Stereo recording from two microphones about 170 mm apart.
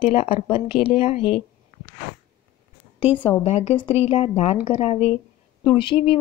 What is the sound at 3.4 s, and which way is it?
Speech, 35° left (ahead or behind).